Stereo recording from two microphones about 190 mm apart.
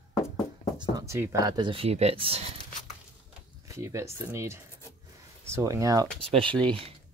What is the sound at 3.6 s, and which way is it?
Speech, 15° right (ahead or behind).